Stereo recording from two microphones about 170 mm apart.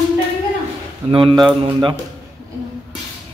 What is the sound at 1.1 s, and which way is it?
Speech, 30° right (ahead or behind).